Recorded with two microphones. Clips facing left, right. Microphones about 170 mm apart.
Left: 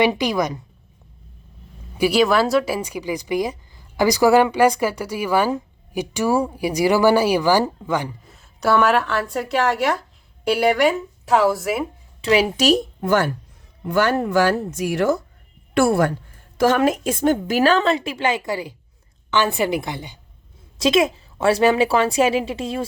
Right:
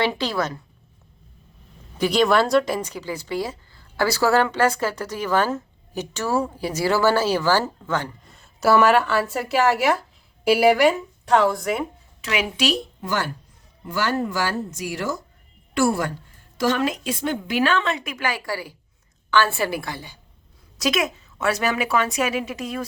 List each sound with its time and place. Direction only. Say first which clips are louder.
0.0 s a woman's voice: left 4 dB; 15° left (ahead or behind)
2.0 s a woman's voice: left 2 dB; 5° left (ahead or behind)
12.2 s a woman's voice: left 6 dB; 35° left (ahead or behind)